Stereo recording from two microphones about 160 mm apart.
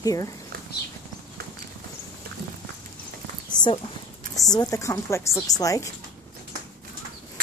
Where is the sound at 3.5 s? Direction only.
30° left (ahead or behind).